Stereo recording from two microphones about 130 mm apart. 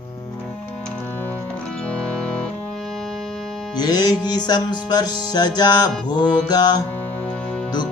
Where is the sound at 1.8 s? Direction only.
10° left (ahead or behind).